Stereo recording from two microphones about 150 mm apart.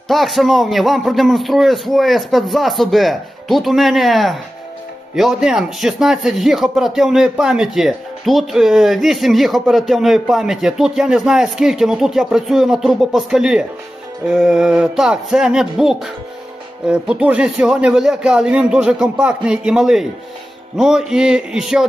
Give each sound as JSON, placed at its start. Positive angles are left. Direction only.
{"t": 0.1, "sound": "speech", "side_deg": 0}